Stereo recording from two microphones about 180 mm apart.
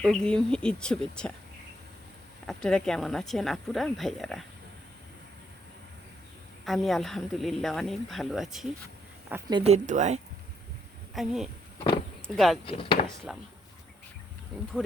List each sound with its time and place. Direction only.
0.0 s speech: 5° left (ahead or behind)
2.5 s speech: 5° left (ahead or behind)
6.7 s speech: centre (ahead or behind)
9.5 s a woman's voice: 30° right (ahead or behind)
11.1 s speech: centre (ahead or behind)
12.6 s speech: 30° left (ahead or behind)
13.3 s speech: centre (ahead or behind)